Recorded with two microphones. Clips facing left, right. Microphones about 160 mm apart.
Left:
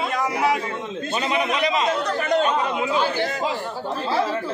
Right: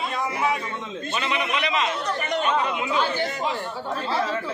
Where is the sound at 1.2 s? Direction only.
40° left (ahead or behind).